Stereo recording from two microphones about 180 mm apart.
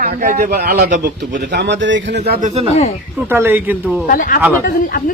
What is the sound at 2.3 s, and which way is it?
Speech, 45° right (ahead or behind).